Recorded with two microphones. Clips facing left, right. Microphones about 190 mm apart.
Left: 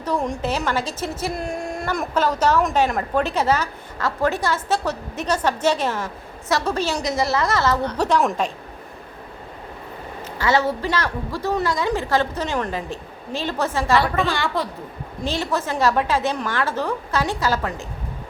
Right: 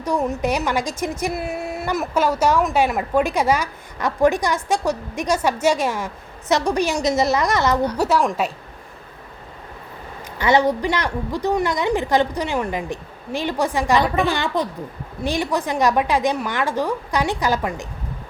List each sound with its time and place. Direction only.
0.0 s a woman's voice: 10° right (ahead or behind)
10.3 s a woman's voice: 20° right (ahead or behind)